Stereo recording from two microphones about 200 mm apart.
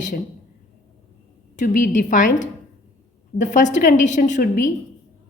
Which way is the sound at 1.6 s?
40° left (ahead or behind).